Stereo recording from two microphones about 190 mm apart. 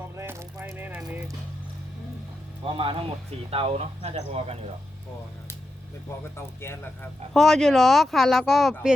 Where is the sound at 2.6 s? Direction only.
30° right (ahead or behind).